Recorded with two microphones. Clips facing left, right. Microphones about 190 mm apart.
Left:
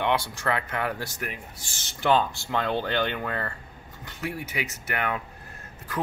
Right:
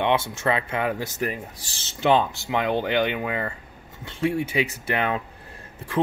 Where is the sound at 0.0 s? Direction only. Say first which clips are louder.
Right 4 dB; 25° right (ahead or behind).